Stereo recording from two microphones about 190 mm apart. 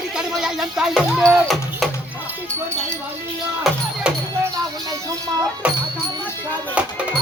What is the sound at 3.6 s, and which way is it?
Music, 5° right (ahead or behind).